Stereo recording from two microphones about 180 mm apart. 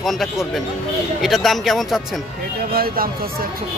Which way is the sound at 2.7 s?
55° right (ahead or behind).